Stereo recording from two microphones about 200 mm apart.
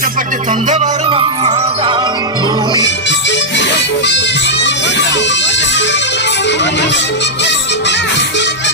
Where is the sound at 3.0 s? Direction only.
65° left (ahead or behind).